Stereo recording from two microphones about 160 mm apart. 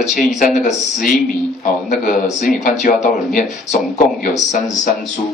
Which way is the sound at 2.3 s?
50° left (ahead or behind).